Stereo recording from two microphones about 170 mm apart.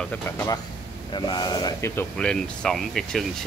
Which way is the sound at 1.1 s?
25° left (ahead or behind).